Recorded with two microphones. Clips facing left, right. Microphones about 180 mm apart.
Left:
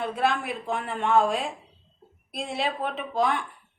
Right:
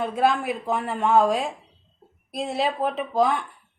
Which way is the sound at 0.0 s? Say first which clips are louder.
Right 4 dB; 40° right (ahead or behind).